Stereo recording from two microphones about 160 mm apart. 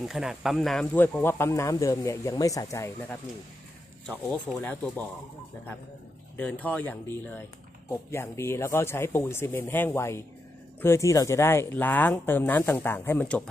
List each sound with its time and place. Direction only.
0.0 s speech: centre (ahead or behind)
0.9 s speech: 10° left (ahead or behind)
4.3 s speech: 10° left (ahead or behind)
6.3 s speech: 10° left (ahead or behind)